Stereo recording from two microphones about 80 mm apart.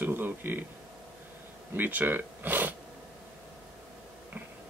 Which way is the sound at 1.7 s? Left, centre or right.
Right.